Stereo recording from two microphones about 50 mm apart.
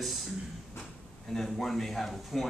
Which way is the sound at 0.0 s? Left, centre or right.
Centre.